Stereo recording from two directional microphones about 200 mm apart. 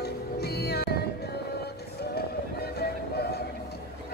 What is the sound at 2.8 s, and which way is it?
Music, 55° left (ahead or behind).